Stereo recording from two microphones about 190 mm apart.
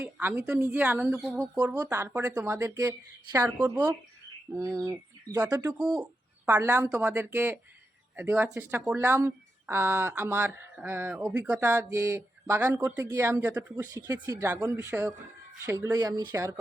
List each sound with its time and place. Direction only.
0.0 s speech: 10° right (ahead or behind)
4.5 s bird: 20° right (ahead or behind)
4.9 s speech: 15° right (ahead or behind)
5.7 s speech: 5° right (ahead or behind)